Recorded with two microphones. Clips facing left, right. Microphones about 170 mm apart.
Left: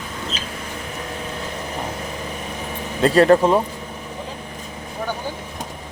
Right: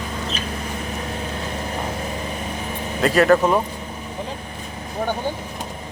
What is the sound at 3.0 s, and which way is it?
Speech, 30° left (ahead or behind).